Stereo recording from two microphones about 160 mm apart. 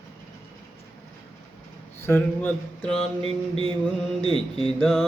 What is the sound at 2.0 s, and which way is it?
Mantra, 10° left (ahead or behind).